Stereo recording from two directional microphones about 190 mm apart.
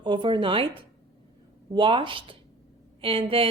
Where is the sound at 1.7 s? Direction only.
25° right (ahead or behind).